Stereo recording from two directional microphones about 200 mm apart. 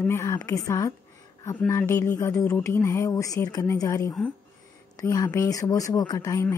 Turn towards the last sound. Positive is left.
turn(degrees=10)  # may be behind; listen again after turning